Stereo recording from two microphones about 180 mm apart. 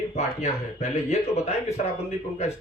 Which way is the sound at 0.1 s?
35° left (ahead or behind).